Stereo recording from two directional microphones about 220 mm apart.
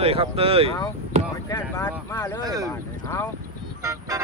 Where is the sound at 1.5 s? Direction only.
15° left (ahead or behind).